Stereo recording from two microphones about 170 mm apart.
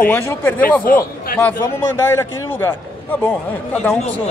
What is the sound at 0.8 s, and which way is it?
Speech, 55° left (ahead or behind).